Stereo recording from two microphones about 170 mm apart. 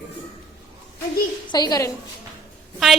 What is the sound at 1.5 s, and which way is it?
Speech, 25° left (ahead or behind).